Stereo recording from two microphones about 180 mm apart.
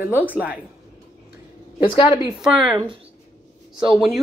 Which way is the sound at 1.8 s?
25° left (ahead or behind).